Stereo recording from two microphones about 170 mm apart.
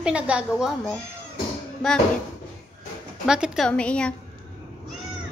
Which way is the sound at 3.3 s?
Centre (ahead or behind).